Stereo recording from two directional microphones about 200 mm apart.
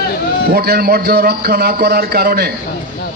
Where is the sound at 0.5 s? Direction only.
50° right (ahead or behind).